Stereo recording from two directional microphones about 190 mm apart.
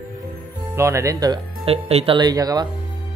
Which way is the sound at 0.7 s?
15° right (ahead or behind).